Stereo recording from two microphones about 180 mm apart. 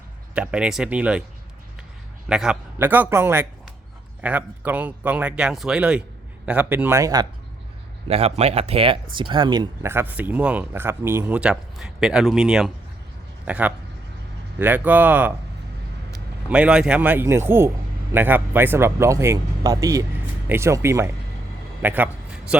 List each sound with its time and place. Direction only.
0.3 s speech: 5° right (ahead or behind)
2.3 s speech: 5° right (ahead or behind); by 7.3 s 20° right (ahead or behind)
8.0 s speech: 35° right (ahead or behind); by 15.3 s 10° right (ahead or behind)
16.5 s speech: 5° right (ahead or behind)
21.8 s a sound: 10° right (ahead or behind)